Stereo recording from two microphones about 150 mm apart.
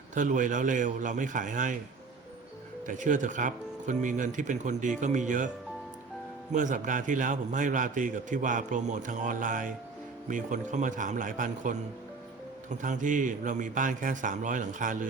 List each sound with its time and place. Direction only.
0.1 s a man's voice: 60° right (ahead or behind)
2.8 s a man's voice: 55° right (ahead or behind)
6.5 s a man's voice: 55° right (ahead or behind)